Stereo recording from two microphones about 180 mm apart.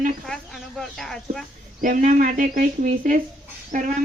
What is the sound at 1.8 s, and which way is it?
Speech, 45° right (ahead or behind).